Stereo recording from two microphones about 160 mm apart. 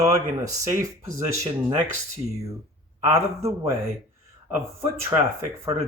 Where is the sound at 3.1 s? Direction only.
20° right (ahead or behind).